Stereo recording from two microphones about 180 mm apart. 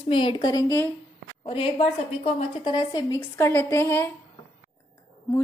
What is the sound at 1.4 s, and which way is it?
A woman's voice, 30° left (ahead or behind).